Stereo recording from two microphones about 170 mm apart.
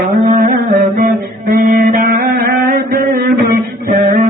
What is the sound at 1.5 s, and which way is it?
Music, 55° right (ahead or behind).